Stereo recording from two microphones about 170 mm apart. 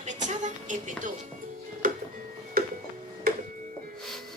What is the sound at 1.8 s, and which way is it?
Music, 55° right (ahead or behind).